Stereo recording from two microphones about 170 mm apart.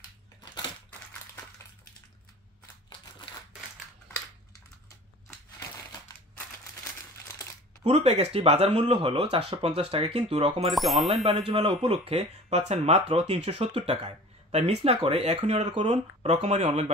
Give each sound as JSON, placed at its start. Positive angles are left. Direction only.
{"t": 7.8, "sound": "speech", "side_deg": -40}
{"t": 10.7, "sound": "speech", "side_deg": 0}
{"t": 11.2, "sound": "speech", "side_deg": -30}